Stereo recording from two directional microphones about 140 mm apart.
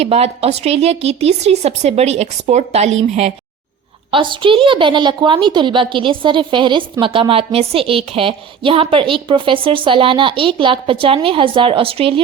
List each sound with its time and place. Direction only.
0.0 s speech: 45° right (ahead or behind)
4.1 s a woman's voice: 35° right (ahead or behind)